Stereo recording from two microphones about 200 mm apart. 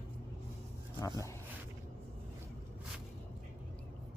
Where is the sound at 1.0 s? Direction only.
15° left (ahead or behind).